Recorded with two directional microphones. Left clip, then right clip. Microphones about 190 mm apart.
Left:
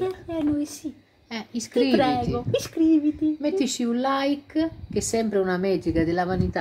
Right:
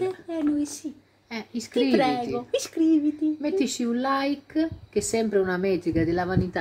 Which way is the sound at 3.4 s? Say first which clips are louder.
Left 1 dB; 15° left (ahead or behind).